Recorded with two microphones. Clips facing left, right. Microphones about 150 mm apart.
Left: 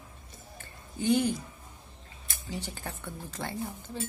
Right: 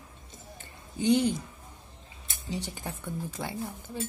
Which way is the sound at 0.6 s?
20° right (ahead or behind).